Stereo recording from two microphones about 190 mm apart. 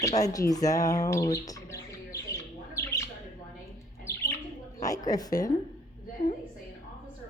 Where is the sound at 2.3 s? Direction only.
15° left (ahead or behind).